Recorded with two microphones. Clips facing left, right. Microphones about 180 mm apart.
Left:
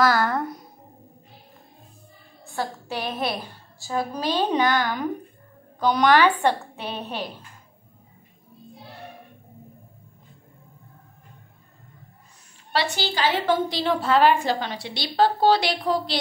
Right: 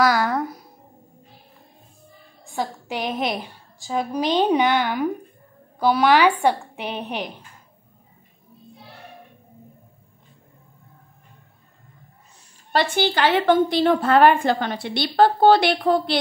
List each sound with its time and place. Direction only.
0.0 s a woman's voice: 15° right (ahead or behind)
0.3 s a sound: centre (ahead or behind)
2.4 s a woman's voice: 15° right (ahead or behind)
12.7 s a woman's voice: 50° right (ahead or behind)